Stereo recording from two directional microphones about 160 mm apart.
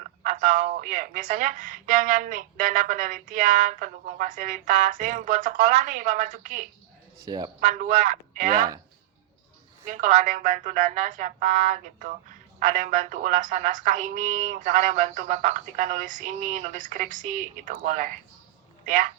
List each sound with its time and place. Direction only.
0.2 s speech: 50° right (ahead or behind)
7.2 s speech: 25° right (ahead or behind)
7.6 s speech: 55° right (ahead or behind)
9.8 s speech: 55° right (ahead or behind)